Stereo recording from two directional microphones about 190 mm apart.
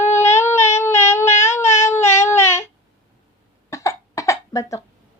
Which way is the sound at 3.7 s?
15° left (ahead or behind).